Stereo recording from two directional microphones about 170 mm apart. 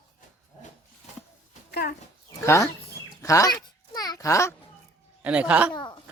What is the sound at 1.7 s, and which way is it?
Speech, 65° left (ahead or behind).